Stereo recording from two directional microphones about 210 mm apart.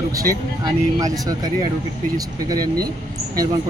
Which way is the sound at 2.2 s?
15° right (ahead or behind).